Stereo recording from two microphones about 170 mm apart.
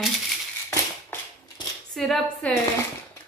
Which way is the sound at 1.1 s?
15° left (ahead or behind).